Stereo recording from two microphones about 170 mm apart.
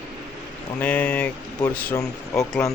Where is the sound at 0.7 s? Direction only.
10° left (ahead or behind).